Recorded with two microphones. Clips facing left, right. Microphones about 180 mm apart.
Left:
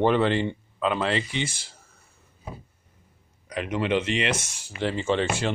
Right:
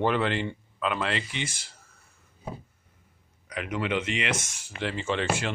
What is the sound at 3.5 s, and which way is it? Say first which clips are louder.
Speech: left 4 dB; 30° left (ahead or behind).